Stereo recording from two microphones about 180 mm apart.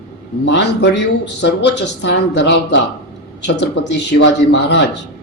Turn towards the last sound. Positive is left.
turn(degrees=80)